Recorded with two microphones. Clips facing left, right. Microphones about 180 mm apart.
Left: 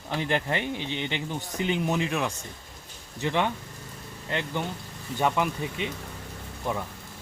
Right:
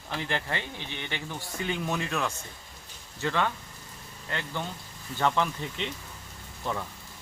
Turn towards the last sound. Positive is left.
turn(degrees=15)  # may be behind; listen again after turning